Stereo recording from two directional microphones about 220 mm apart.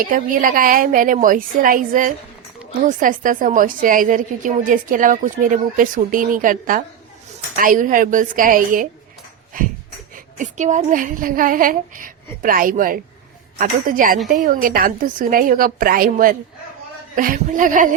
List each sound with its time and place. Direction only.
0.0 s a woman's voice: 40° right (ahead or behind)